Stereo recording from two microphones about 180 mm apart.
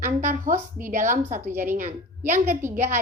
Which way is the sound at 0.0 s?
45° right (ahead or behind).